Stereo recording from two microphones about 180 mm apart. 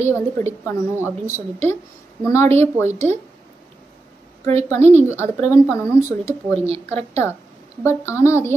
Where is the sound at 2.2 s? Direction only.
15° left (ahead or behind).